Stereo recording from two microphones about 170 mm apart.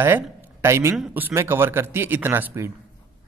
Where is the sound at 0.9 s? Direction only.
5° right (ahead or behind).